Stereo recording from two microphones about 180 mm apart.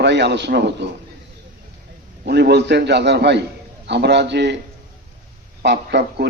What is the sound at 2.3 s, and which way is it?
A man's voice, 65° right (ahead or behind).